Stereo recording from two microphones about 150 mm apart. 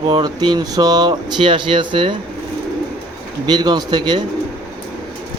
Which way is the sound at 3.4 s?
30° right (ahead or behind).